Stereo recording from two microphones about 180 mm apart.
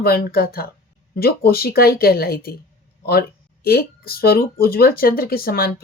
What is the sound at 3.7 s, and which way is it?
Speech, 60° left (ahead or behind).